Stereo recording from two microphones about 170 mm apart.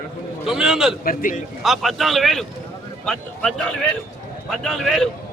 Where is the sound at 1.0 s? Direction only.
55° left (ahead or behind).